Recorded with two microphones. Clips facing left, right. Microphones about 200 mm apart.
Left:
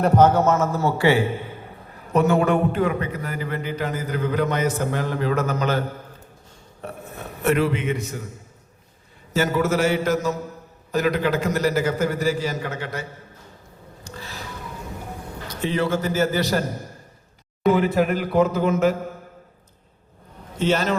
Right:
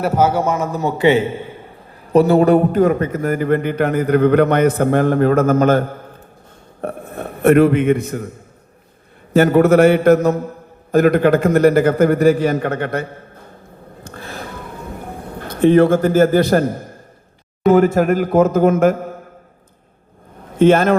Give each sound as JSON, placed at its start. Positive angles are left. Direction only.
{"t": 0.0, "sound": "a man's voice", "side_deg": -5}
{"t": 2.1, "sound": "a man's voice", "side_deg": -35}
{"t": 6.8, "sound": "a man's voice", "side_deg": -55}
{"t": 9.3, "sound": "a man's voice", "side_deg": -60}
{"t": 14.0, "sound": "a sound", "side_deg": -55}
{"t": 15.4, "sound": "a man's voice", "side_deg": -55}
{"t": 17.7, "sound": "a man's voice", "side_deg": -45}
{"t": 20.6, "sound": "a man's voice", "side_deg": -55}